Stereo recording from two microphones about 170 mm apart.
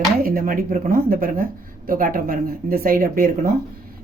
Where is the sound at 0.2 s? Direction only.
60° right (ahead or behind).